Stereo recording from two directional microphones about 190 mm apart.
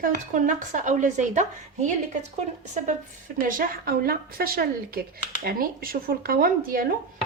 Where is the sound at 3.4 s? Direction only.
50° right (ahead or behind).